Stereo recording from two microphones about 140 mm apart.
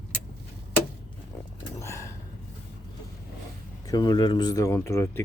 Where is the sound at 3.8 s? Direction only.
30° left (ahead or behind).